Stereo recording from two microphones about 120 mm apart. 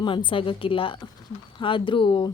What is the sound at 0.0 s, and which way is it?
A woman's voice, 45° left (ahead or behind).